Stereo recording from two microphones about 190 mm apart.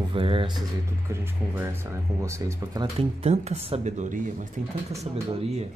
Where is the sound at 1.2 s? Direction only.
10° right (ahead or behind).